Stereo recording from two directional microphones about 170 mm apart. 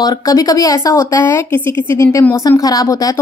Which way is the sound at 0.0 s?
20° left (ahead or behind).